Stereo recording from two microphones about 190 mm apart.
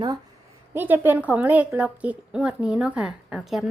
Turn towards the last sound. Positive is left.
turn(degrees=0)  # may be behind; listen again after turning